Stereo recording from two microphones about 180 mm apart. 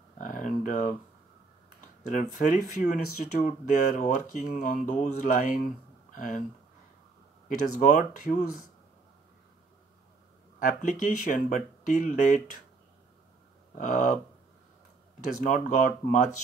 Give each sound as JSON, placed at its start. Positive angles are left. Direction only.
{"t": 0.2, "sound": "speech", "side_deg": 45}
{"t": 2.0, "sound": "speech", "side_deg": 45}
{"t": 7.4, "sound": "speech", "side_deg": 45}
{"t": 10.6, "sound": "speech", "side_deg": 45}
{"t": 13.7, "sound": "speech", "side_deg": 45}
{"t": 15.1, "sound": "speech", "side_deg": 45}